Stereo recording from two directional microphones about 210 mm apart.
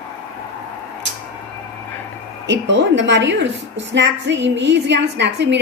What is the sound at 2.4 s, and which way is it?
A woman's voice, 60° right (ahead or behind).